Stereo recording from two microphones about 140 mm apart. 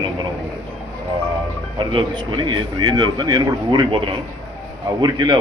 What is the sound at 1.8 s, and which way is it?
A man's voice, 35° right (ahead or behind).